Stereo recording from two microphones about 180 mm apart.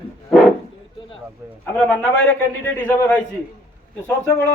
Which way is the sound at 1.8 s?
5° left (ahead or behind).